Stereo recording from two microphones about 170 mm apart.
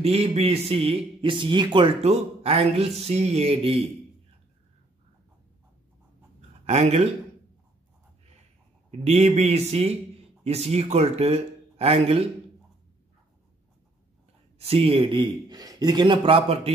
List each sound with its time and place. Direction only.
0.0 s a man's voice: 35° right (ahead or behind)
6.6 s speech: 40° right (ahead or behind)
9.0 s a man's voice: 40° right (ahead or behind)
14.6 s a man's voice: 35° right (ahead or behind)